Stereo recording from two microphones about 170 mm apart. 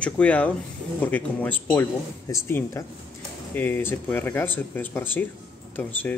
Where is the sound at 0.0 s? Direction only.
10° left (ahead or behind).